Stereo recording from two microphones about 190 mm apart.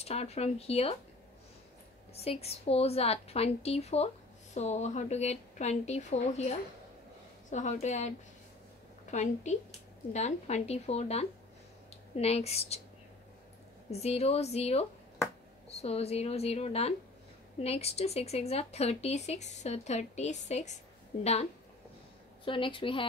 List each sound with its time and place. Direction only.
0.0 s speech: 35° left (ahead or behind)
2.1 s speech: 30° left (ahead or behind)
9.1 s speech: 40° left (ahead or behind)
13.8 s a woman's voice: 35° left (ahead or behind)